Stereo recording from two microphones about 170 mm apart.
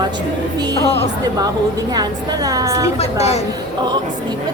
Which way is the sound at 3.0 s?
40° left (ahead or behind).